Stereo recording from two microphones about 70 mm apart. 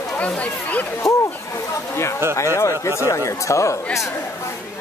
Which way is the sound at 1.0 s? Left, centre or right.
Centre.